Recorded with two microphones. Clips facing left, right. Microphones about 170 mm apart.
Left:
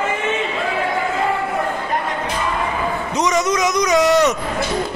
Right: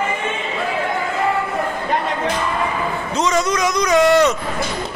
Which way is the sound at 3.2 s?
20° left (ahead or behind).